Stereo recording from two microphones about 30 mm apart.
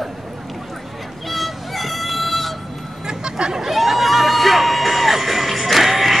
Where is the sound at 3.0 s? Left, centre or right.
Right.